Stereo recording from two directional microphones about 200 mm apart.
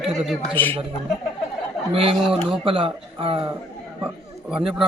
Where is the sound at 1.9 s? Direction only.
30° right (ahead or behind).